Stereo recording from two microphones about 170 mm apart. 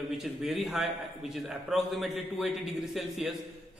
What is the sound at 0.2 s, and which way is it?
A man's voice, centre (ahead or behind).